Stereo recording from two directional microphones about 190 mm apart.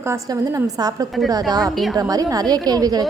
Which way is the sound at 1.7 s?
Centre (ahead or behind).